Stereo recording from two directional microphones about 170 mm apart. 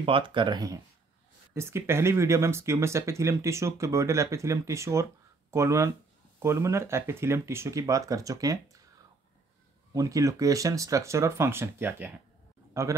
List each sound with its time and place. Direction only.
0.0 s speech: 30° right (ahead or behind)
9.9 s speech: 20° right (ahead or behind)